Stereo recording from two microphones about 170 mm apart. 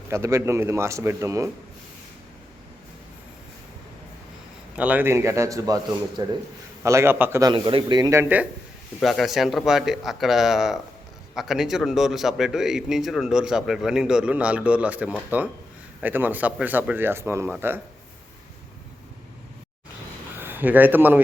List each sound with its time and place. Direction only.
0.1 s speech: 15° right (ahead or behind)
4.8 s speech: 10° right (ahead or behind)
7.5 s speech: 30° right (ahead or behind)
8.2 s speech: 10° right (ahead or behind)
20.4 s speech: 10° right (ahead or behind)